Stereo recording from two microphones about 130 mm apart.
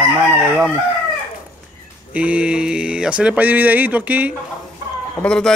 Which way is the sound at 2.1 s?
10° right (ahead or behind).